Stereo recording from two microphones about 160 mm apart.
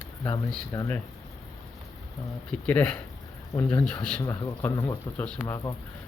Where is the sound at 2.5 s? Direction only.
10° left (ahead or behind).